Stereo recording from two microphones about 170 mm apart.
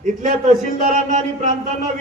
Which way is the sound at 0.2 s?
50° right (ahead or behind).